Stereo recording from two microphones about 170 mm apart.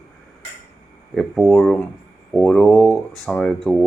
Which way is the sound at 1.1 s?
Centre (ahead or behind).